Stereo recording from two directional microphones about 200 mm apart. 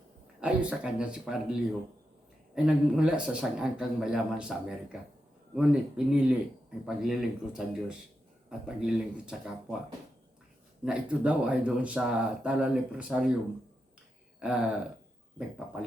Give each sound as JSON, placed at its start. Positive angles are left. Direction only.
{"t": 0.3, "sound": "speech", "side_deg": -5}
{"t": 2.6, "sound": "speech", "side_deg": -5}
{"t": 10.8, "sound": "speech", "side_deg": -5}
{"t": 14.3, "sound": "speech", "side_deg": -5}